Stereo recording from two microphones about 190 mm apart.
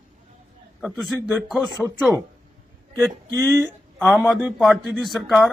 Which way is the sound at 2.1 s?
15° right (ahead or behind).